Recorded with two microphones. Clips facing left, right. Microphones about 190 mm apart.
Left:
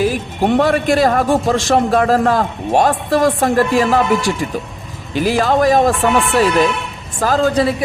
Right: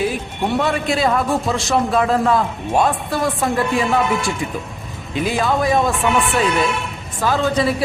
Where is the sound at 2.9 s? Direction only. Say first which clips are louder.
Left 6 dB; 90° left.